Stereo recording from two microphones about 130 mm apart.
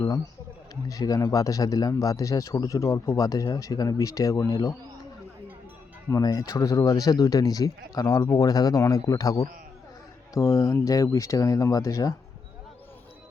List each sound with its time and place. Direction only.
0.9 s speech: 25° left (ahead or behind)
6.1 s speech: 25° left (ahead or behind)